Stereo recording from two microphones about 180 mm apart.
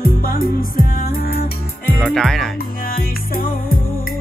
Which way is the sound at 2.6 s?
55° left (ahead or behind).